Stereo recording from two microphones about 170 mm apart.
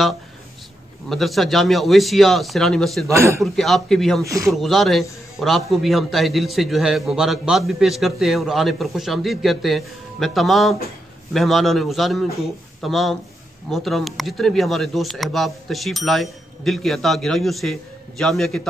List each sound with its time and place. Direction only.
1.0 s a man's voice: centre (ahead or behind)
3.1 s a man's voice: 15° right (ahead or behind)
3.4 s a man's voice: centre (ahead or behind)
4.2 s a man's voice: 20° right (ahead or behind)
4.5 s a man's voice: centre (ahead or behind)